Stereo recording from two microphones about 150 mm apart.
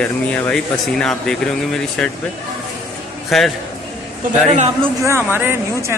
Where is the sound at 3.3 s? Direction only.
Centre (ahead or behind).